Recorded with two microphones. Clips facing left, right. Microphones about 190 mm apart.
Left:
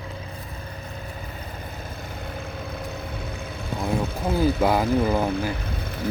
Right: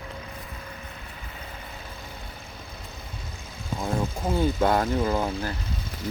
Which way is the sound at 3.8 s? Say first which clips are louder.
Left 2 dB; 65° left (ahead or behind).